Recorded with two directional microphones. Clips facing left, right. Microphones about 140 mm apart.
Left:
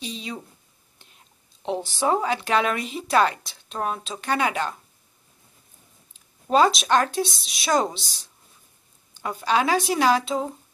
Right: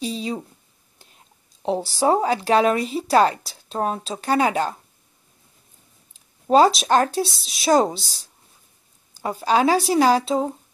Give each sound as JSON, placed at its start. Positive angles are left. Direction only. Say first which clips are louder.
{"t": 0.0, "sound": "a sound", "louder": "right 7 dB", "side_deg": -35}
{"t": 1.6, "sound": "speech", "louder": "right 4 dB", "side_deg": -35}
{"t": 6.5, "sound": "speech", "louder": "right 3 dB", "side_deg": -35}